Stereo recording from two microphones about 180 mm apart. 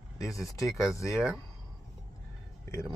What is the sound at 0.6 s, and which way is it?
Speech, 15° left (ahead or behind).